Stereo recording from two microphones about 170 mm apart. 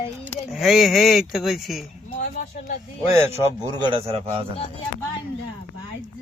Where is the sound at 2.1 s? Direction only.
50° left (ahead or behind).